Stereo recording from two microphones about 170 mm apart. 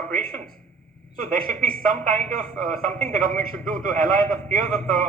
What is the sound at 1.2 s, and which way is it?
A man's voice, 50° right (ahead or behind).